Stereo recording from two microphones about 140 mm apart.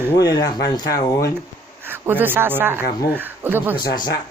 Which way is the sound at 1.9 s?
15° right (ahead or behind).